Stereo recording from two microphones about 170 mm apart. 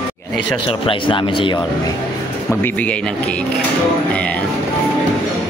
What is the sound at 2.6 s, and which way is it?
Speech, 10° left (ahead or behind).